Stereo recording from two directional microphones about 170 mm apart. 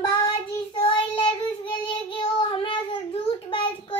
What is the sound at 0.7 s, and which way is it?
Child singing, 35° left (ahead or behind).